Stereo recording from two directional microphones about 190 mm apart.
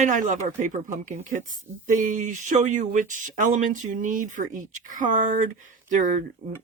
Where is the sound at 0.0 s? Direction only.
40° right (ahead or behind).